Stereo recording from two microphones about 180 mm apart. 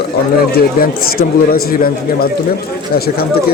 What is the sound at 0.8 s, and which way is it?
A man's voice, 55° left (ahead or behind).